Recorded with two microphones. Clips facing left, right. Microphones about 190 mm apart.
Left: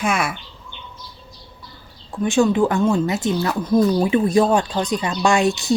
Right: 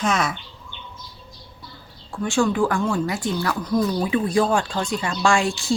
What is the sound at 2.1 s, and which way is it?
Speech, 20° left (ahead or behind).